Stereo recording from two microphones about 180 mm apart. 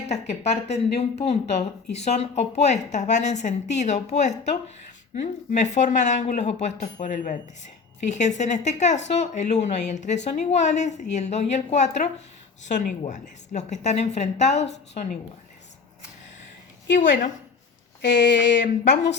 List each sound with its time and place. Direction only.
0.1 s speech: 35° left (ahead or behind)
18.0 s speech: 80° left